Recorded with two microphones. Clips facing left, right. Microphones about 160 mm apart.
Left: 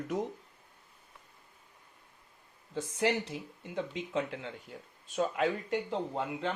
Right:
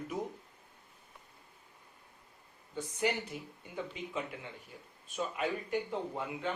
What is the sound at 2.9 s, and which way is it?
Speech, 90° left.